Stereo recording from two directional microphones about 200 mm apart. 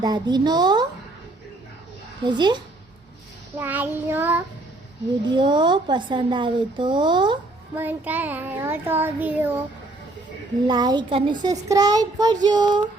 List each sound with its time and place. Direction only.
0.0 s a child's voice: 20° right (ahead or behind)
2.2 s a child's voice: 20° right (ahead or behind)
3.6 s child singing: 10° right (ahead or behind)
5.4 s a child's voice: 20° right (ahead or behind)
7.8 s child singing: 10° right (ahead or behind)
10.7 s a child's voice: 20° right (ahead or behind)